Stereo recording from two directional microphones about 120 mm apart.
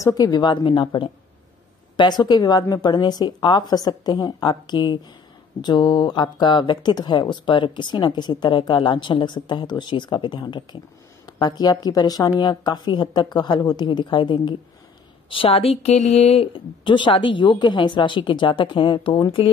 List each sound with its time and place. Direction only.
0.0 s a woman's voice: 35° left (ahead or behind)